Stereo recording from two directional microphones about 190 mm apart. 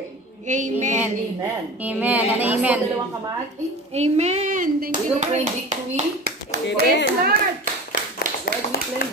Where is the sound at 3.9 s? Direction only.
35° right (ahead or behind).